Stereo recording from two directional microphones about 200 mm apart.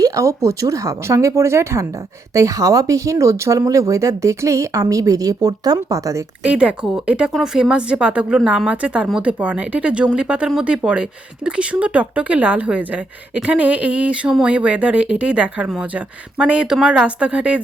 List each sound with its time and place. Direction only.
0.0 s speech: 15° right (ahead or behind)
6.5 s speech: 5° right (ahead or behind)